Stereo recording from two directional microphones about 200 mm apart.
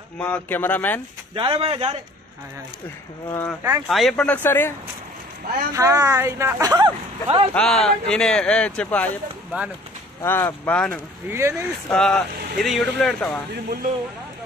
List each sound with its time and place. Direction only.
0.2 s speech: 10° left (ahead or behind)
1.3 s speech: 25° right (ahead or behind)
3.3 s speech: 10° left (ahead or behind)
3.8 s speech: centre (ahead or behind)
5.7 s speech: 15° right (ahead or behind)
7.5 s a man's voice: 5° left (ahead or behind)
10.2 s speech: 10° left (ahead or behind)
11.2 s speech: 15° right (ahead or behind)
11.9 s a man's voice: 5° left (ahead or behind)